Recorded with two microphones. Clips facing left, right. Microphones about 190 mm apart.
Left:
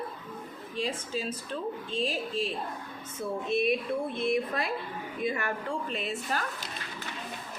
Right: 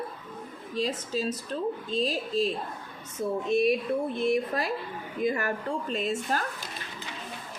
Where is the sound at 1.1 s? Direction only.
40° right (ahead or behind).